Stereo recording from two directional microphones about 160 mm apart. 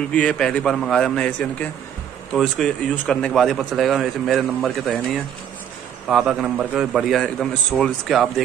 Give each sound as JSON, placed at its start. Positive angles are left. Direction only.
{"t": 0.1, "sound": "a man's voice", "side_deg": 5}